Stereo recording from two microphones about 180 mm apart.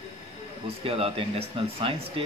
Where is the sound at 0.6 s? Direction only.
30° right (ahead or behind).